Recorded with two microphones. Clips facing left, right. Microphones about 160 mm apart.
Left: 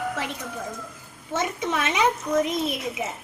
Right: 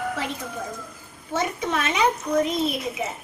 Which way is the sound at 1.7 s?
5° left (ahead or behind).